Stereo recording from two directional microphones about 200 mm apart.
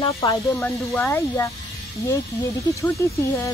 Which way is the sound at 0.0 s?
20° left (ahead or behind).